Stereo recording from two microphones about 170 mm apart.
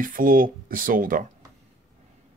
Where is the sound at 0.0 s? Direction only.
55° right (ahead or behind).